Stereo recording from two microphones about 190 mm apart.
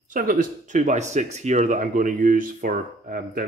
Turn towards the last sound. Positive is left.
turn(degrees=-45)  # may be behind; listen again after turning